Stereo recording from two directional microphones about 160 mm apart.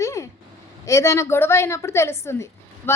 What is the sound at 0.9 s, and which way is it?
A woman's voice, 20° left (ahead or behind).